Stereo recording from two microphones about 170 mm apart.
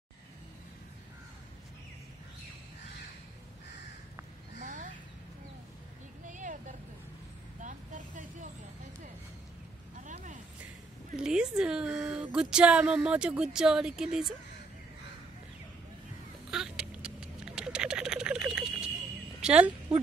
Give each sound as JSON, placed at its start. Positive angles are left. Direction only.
{"t": 4.6, "sound": "a sound", "side_deg": -50}
{"t": 6.2, "sound": "vehicle", "side_deg": -50}
{"t": 7.6, "sound": "vehicle", "side_deg": -50}
{"t": 9.9, "sound": "a sound", "side_deg": -45}
{"t": 11.1, "sound": "a woman's voice", "side_deg": -5}
{"t": 16.4, "sound": "frog", "side_deg": -5}
{"t": 19.4, "sound": "a woman's voice", "side_deg": -5}